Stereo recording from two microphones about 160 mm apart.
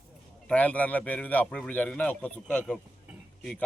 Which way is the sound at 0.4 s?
10° left (ahead or behind).